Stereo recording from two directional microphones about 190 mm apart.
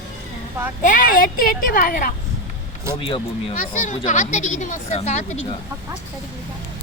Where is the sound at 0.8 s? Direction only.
45° left (ahead or behind).